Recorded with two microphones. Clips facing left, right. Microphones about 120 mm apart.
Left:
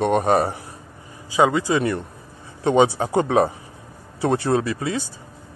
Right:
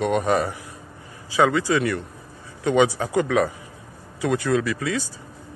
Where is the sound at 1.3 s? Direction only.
20° left (ahead or behind).